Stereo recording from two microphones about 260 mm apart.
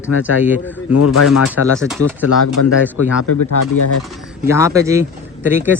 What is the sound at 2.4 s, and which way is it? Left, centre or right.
Speech, left.